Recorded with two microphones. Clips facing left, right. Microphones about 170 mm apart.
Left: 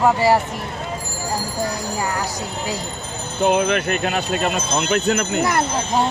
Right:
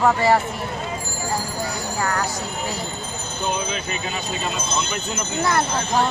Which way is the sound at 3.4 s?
75° left (ahead or behind).